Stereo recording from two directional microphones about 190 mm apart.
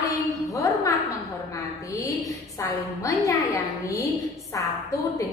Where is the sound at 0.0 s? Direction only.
15° left (ahead or behind).